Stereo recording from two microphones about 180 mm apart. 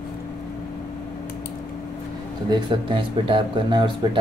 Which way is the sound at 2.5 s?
25° right (ahead or behind).